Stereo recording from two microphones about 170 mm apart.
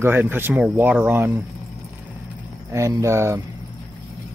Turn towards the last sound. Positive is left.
turn(degrees=-15)  # may be behind; listen again after turning